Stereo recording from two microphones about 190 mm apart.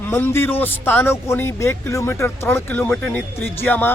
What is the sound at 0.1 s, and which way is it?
Speech, 10° left (ahead or behind).